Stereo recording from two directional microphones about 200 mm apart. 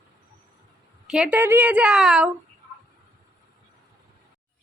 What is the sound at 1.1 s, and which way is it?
A woman's voice, 5° right (ahead or behind).